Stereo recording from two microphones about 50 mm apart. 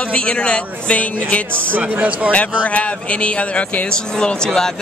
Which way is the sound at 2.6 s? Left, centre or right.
Left.